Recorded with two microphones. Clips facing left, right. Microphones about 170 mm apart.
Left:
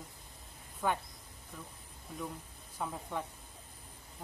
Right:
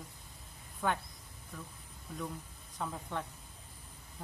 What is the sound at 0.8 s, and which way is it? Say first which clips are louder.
Speech: even; 5° left (ahead or behind).